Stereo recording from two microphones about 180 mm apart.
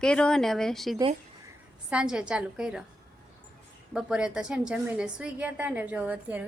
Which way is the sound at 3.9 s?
5° right (ahead or behind).